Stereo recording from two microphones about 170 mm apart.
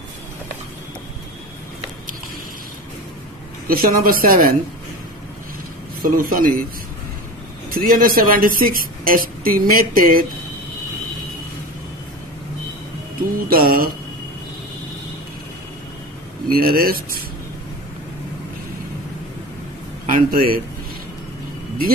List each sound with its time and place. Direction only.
3.6 s a woman's voice: 60° right (ahead or behind)
6.0 s a woman's voice: 60° right (ahead or behind)
7.7 s a woman's voice: 55° right (ahead or behind)
13.2 s a woman's voice: 60° right (ahead or behind)
16.4 s a woman's voice: 60° right (ahead or behind)
20.2 s a woman's voice: 60° right (ahead or behind)